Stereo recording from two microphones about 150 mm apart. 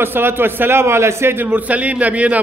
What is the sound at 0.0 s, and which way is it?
A man's voice, 15° right (ahead or behind).